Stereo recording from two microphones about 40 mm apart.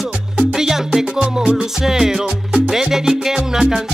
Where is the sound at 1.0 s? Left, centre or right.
Right.